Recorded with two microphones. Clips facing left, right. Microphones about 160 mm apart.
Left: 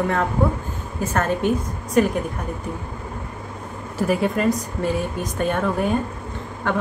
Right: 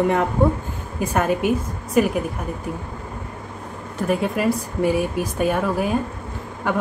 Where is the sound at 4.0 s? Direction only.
Centre (ahead or behind).